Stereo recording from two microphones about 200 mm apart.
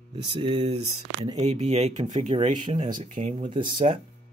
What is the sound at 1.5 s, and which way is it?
Speech, 35° right (ahead or behind).